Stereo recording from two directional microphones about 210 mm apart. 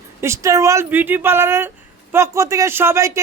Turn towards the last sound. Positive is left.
turn(degrees=-15)  # may be behind; listen again after turning